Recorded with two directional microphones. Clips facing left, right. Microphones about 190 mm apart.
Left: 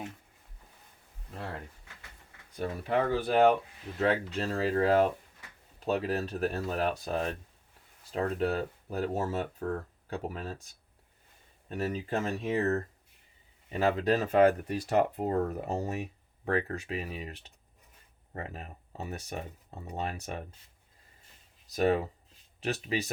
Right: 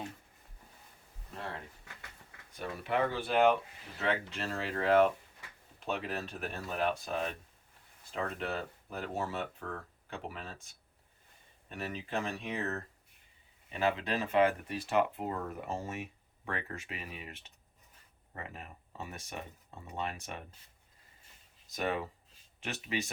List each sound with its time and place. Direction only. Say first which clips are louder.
2.6 s speech: left 3 dB; 35° left (ahead or behind)
11.7 s speech: left 6 dB; 40° left (ahead or behind)
21.8 s speech: left 8 dB; 40° left (ahead or behind)